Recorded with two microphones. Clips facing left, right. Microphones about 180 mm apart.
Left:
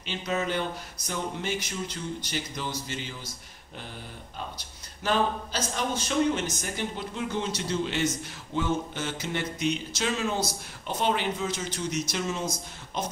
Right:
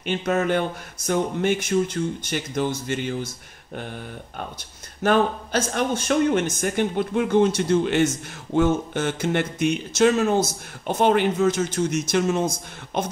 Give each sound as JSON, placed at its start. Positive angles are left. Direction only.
{"t": 0.0, "sound": "a man's voice", "side_deg": -55}
{"t": 5.0, "sound": "a man's voice", "side_deg": -55}